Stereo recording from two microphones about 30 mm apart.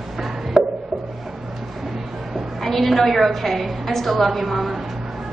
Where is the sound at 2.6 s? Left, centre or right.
Centre.